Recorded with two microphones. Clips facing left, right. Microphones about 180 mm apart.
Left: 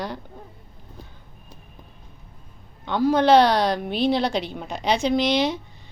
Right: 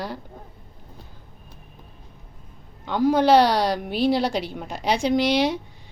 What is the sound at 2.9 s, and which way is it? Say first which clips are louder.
A woman's voice: even; 10° right (ahead or behind).